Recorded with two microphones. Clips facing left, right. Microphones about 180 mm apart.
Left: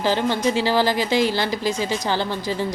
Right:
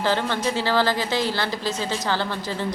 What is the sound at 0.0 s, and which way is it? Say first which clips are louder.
Speech: left 3 dB; 15° left (ahead or behind).